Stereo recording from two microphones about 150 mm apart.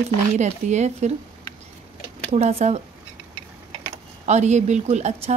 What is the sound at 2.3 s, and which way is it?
Speech, 50° right (ahead or behind).